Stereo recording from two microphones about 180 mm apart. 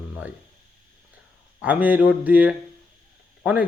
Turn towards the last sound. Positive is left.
turn(degrees=-5)  # may be behind; listen again after turning